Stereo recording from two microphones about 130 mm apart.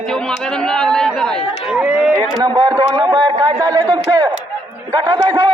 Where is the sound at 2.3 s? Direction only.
35° right (ahead or behind).